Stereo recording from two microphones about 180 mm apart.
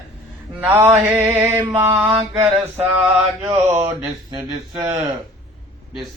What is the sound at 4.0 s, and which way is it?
Mantra, 15° right (ahead or behind).